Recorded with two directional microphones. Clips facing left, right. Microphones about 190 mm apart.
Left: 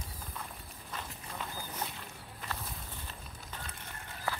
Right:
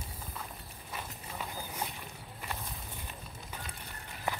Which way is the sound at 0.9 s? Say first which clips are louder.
Right 1 dB; 10° right (ahead or behind).